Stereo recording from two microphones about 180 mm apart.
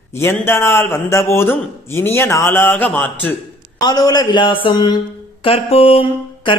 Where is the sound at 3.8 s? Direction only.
20° left (ahead or behind).